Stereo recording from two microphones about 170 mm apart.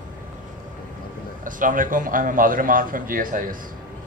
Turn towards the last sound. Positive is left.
turn(degrees=-55)  # may be behind; listen again after turning